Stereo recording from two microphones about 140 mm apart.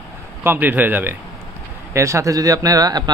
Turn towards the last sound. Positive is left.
turn(degrees=-25)  # may be behind; listen again after turning